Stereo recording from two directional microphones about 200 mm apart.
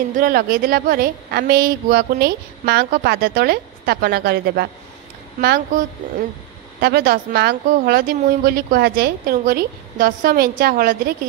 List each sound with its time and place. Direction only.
0.2 s a woman's voice: 45° right (ahead or behind)